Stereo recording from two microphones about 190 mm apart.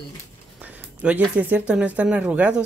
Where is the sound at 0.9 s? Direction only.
5° right (ahead or behind).